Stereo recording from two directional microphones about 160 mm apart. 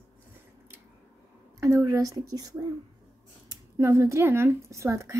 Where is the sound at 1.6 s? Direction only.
20° right (ahead or behind).